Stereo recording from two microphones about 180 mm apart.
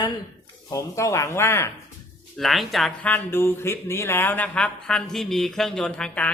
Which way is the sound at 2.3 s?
Centre (ahead or behind).